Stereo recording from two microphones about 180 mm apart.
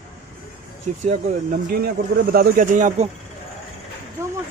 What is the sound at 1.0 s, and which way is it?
Speech, 40° right (ahead or behind).